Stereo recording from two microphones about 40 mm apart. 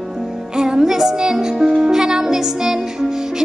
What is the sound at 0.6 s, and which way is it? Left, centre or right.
Music, centre.